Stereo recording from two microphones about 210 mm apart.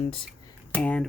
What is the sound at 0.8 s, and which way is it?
Speech, 5° left (ahead or behind).